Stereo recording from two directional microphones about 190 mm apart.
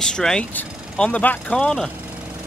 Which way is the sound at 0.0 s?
5° left (ahead or behind).